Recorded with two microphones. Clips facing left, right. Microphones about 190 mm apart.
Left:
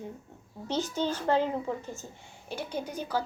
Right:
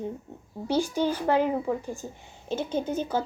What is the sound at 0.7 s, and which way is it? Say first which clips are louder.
A woman's voice: right 5 dB; 10° right (ahead or behind).